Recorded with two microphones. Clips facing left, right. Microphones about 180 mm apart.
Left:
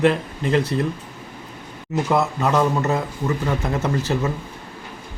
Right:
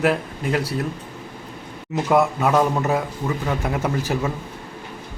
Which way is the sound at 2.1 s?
10° right (ahead or behind).